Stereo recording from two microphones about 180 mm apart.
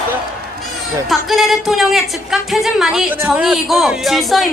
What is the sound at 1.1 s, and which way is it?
Speech, centre (ahead or behind).